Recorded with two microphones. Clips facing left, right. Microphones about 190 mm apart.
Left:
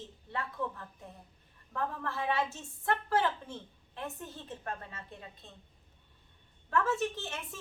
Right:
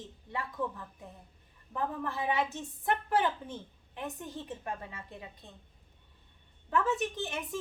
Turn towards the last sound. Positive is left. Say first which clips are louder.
# right 6 dB
turn(degrees=-15)  # may be behind; listen again after turning